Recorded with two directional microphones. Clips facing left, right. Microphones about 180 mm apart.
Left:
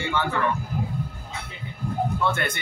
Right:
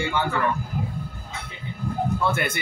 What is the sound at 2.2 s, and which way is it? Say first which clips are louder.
Speech: right 1 dB; 10° right (ahead or behind).